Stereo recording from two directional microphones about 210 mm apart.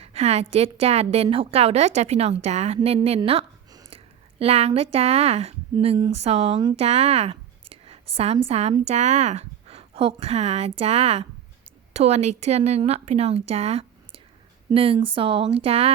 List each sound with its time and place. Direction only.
0.0 s a woman's voice: 30° right (ahead or behind)